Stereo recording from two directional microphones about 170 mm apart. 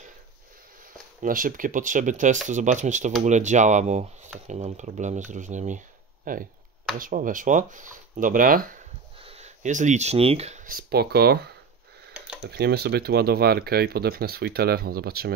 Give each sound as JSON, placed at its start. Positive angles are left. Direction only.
{"t": 1.2, "sound": "speech", "side_deg": -55}
{"t": 9.2, "sound": "speech", "side_deg": -40}